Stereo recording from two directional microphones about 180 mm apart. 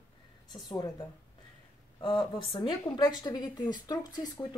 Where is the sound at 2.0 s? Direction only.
25° left (ahead or behind).